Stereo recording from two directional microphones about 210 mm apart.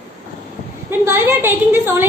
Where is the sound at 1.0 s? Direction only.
10° right (ahead or behind).